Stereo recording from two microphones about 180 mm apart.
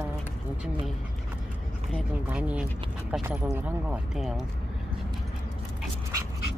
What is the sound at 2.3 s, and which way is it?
Speech, 5° right (ahead or behind).